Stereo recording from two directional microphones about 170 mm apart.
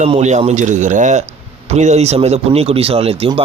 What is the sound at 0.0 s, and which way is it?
Speech, 45° right (ahead or behind).